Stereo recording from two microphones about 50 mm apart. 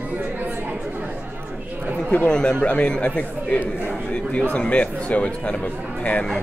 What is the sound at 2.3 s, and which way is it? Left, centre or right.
Speech, centre.